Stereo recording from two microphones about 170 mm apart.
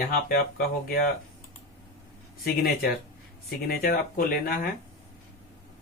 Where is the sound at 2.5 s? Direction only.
65° left (ahead or behind).